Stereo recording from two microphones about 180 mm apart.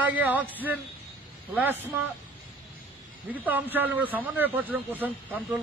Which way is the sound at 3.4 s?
10° right (ahead or behind).